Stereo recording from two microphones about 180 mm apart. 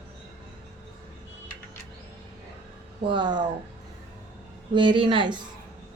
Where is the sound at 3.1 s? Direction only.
25° right (ahead or behind).